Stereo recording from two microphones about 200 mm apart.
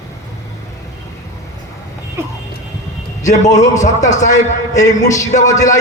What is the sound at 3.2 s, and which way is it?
A man's voice, 35° left (ahead or behind).